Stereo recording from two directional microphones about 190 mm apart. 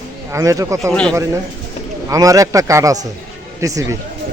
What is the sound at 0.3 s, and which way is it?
Speech, 15° right (ahead or behind).